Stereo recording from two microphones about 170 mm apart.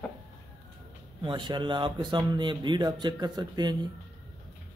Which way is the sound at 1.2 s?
25° right (ahead or behind).